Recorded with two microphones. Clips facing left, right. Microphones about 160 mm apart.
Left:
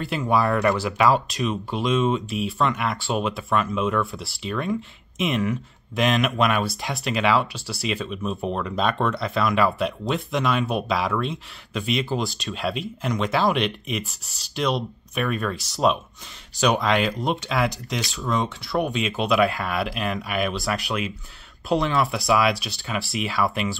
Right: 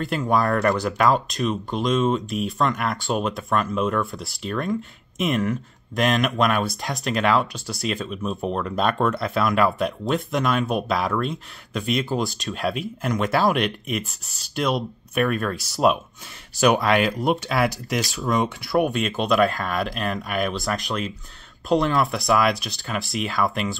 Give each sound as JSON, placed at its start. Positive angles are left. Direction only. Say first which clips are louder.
{"t": 0.0, "sound": "speech", "louder": "even", "side_deg": 0}